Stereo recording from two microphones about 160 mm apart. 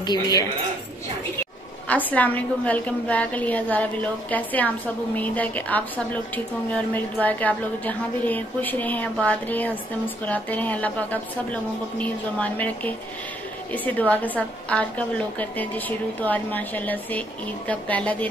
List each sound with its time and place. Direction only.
0.0 s speech: 25° left (ahead or behind)
1.9 s a woman's voice: 10° left (ahead or behind)